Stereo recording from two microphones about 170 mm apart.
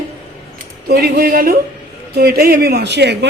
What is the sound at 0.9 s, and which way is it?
Speech, 70° right (ahead or behind).